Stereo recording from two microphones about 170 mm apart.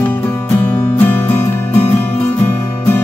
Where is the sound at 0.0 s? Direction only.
10° left (ahead or behind).